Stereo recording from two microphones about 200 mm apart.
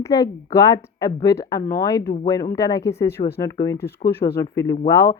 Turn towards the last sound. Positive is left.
turn(degrees=20)  # may be behind; listen again after turning